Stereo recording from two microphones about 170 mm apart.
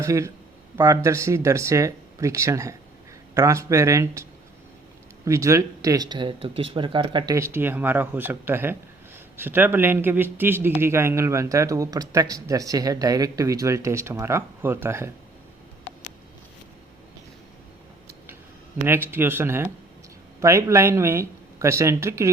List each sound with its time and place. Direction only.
0.0 s speech: 15° right (ahead or behind)
5.2 s speech: 20° right (ahead or behind)
7.3 s speech: 15° right (ahead or behind)
18.9 s speech: 15° right (ahead or behind)